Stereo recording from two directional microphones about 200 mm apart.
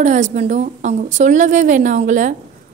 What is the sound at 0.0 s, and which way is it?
A woman's voice, 40° right (ahead or behind).